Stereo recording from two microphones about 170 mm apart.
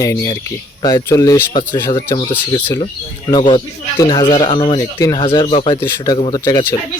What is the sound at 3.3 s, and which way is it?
Speech, 30° left (ahead or behind).